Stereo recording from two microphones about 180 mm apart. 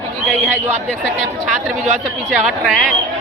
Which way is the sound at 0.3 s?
5° left (ahead or behind).